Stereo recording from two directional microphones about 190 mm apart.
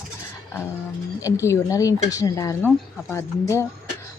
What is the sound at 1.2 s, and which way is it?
Speech, 15° left (ahead or behind).